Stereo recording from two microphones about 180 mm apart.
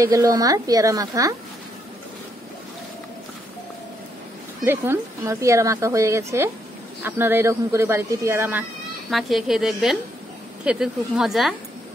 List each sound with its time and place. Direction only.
0.0 s a woman's voice: 20° right (ahead or behind)
4.6 s a woman's voice: 15° right (ahead or behind)